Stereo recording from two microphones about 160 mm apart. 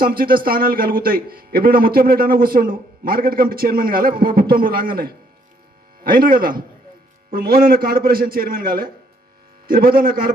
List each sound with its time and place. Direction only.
0.0 s a man's voice: 65° right (ahead or behind)